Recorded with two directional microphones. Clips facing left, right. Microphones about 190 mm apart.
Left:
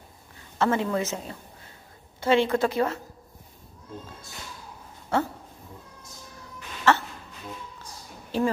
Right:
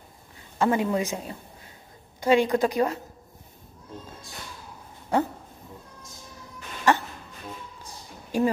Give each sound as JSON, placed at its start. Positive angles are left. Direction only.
{"t": 0.6, "sound": "a woman's voice", "side_deg": -15}
{"t": 5.1, "sound": "a woman's voice", "side_deg": -15}
{"t": 6.9, "sound": "music", "side_deg": -15}
{"t": 8.3, "sound": "a woman's voice", "side_deg": -10}